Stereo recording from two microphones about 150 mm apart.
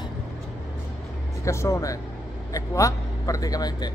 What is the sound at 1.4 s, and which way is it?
A man's voice, 20° left (ahead or behind).